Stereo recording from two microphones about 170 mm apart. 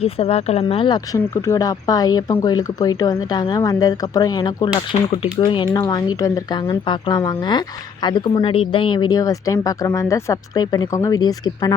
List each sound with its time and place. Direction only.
0.0 s speech: 35° left (ahead or behind)